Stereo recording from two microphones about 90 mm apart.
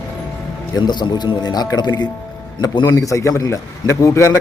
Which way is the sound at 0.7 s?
55° left (ahead or behind).